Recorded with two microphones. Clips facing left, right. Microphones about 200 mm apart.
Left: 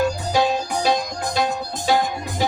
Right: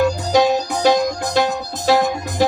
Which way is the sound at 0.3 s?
80° right.